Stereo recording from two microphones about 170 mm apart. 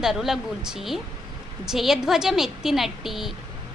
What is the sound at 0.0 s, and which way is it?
Speech, centre (ahead or behind).